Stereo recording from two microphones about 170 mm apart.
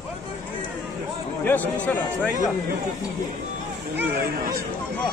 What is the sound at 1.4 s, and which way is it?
Speech, 10° left (ahead or behind).